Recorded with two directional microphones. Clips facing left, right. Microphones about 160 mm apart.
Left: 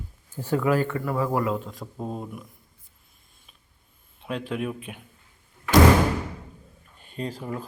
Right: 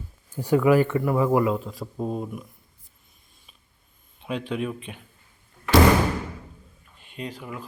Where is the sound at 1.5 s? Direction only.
Centre (ahead or behind).